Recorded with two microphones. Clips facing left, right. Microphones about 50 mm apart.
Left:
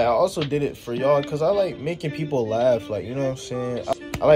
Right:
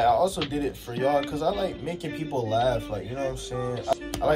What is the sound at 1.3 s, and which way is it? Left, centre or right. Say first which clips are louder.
Speech: left 6 dB; left.